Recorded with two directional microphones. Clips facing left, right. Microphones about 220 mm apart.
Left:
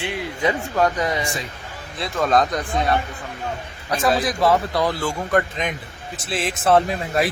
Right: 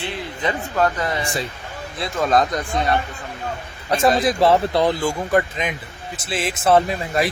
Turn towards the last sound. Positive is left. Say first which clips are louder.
# even
turn(degrees=0)  # may be behind; listen again after turning